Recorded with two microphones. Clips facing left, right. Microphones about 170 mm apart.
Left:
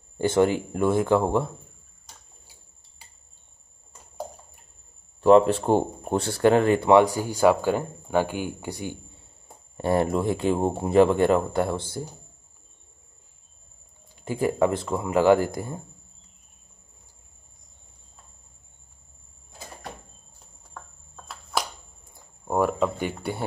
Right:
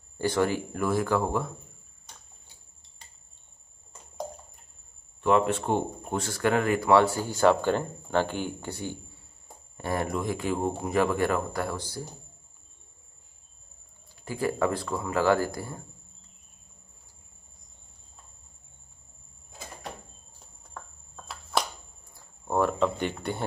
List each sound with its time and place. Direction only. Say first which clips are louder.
0.2 s speech: left 5 dB; 20° left (ahead or behind)
5.2 s speech: left 7 dB; 35° left (ahead or behind); by 8.9 s 15° left (ahead or behind)
9.8 s speech: left 7 dB; 30° left (ahead or behind)
14.2 s speech: left 4 dB; 20° left (ahead or behind)
20.7 s a sound: even; centre (ahead or behind)
22.1 s a sound: left 2 dB; 10° left (ahead or behind)